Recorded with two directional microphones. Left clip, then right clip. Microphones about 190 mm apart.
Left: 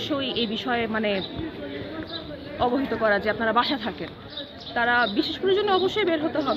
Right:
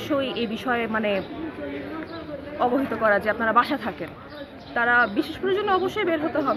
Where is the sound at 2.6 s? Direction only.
15° right (ahead or behind).